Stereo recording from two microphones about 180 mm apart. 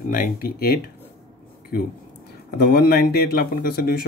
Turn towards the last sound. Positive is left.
turn(degrees=60)  # may be behind; listen again after turning